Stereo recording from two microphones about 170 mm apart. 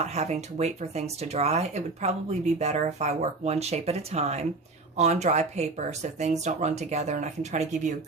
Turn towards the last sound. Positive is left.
turn(degrees=-45)  # may be behind; listen again after turning